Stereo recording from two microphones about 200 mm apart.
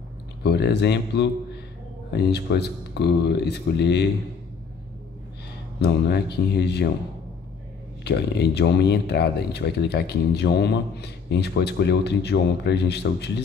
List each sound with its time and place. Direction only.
0.4 s speech: 55° left (ahead or behind)
5.8 s speech: 55° left (ahead or behind)
8.0 s speech: 55° left (ahead or behind)